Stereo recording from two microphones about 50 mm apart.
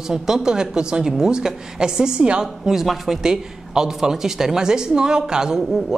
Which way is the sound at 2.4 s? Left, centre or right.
Centre.